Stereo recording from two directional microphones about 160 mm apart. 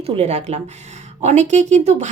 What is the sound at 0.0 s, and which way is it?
Speech, 40° right (ahead or behind).